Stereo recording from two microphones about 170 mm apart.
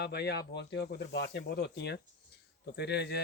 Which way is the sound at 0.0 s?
75° left (ahead or behind).